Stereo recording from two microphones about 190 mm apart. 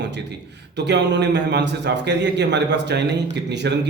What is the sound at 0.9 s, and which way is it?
A man's voice, 65° right (ahead or behind).